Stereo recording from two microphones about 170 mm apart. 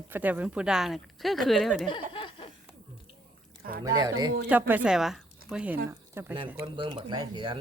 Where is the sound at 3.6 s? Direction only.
60° right (ahead or behind).